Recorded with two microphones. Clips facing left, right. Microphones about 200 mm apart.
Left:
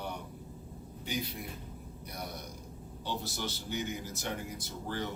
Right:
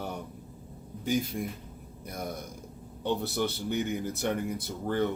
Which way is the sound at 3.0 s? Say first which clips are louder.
Right 9 dB; 60° right (ahead or behind).